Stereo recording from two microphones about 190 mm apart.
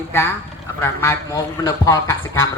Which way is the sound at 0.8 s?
15° left (ahead or behind).